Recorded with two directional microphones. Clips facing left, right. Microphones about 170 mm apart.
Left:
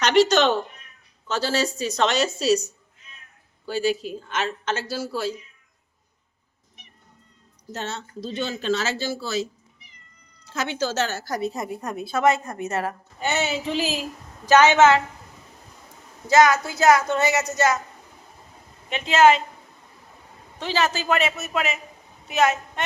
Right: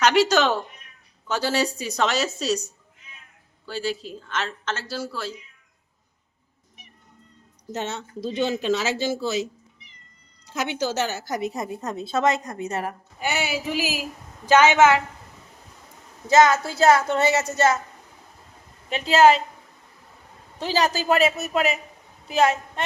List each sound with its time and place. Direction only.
0.0 s a woman's voice: 5° right (ahead or behind)
3.7 s speech: 10° left (ahead or behind)
7.7 s a woman's voice: 15° right (ahead or behind)
16.2 s a woman's voice: 25° right (ahead or behind)
18.9 s a man's voice: 35° right (ahead or behind)
20.6 s a man's voice: 35° right (ahead or behind)